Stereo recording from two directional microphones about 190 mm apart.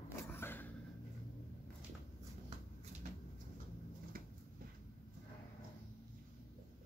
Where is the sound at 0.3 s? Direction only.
10° left (ahead or behind).